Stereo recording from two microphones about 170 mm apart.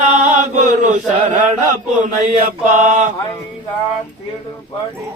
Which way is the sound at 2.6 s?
45° right (ahead or behind).